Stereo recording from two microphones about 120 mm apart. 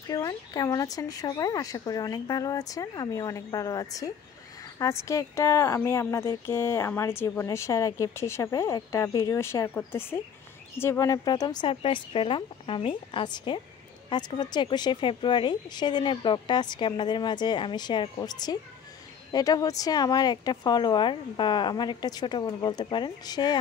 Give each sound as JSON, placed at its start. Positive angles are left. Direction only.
{"t": 0.1, "sound": "speech", "side_deg": 30}
{"t": 11.7, "sound": "a woman's voice", "side_deg": 50}